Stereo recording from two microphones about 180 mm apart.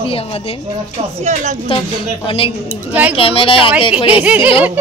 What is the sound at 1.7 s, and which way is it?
Speech, 30° left (ahead or behind).